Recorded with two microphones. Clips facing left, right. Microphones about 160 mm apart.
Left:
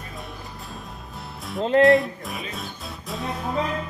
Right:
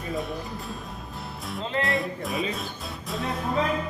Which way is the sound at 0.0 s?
Centre (ahead or behind).